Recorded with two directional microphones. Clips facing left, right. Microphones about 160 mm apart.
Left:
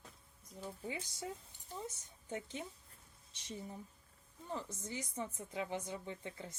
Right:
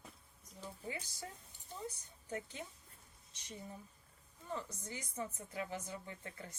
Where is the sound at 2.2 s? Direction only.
20° left (ahead or behind).